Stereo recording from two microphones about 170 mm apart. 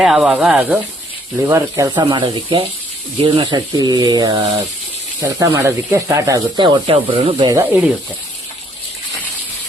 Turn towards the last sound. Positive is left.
turn(degrees=-15)  # may be behind; listen again after turning